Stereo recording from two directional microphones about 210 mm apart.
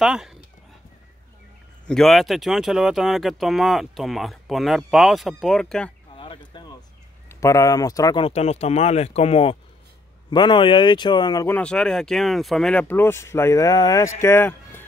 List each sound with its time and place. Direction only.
0.0 s speech: centre (ahead or behind)
1.9 s speech: centre (ahead or behind)
6.1 s a sound: 25° left (ahead or behind)
7.2 s speech: 15° left (ahead or behind)
8.3 s speech: 30° left (ahead or behind)
14.2 s music: 10° left (ahead or behind)